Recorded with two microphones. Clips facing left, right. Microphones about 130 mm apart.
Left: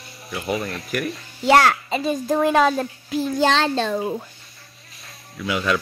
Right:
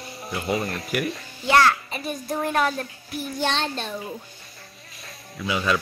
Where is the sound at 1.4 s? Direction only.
85° left.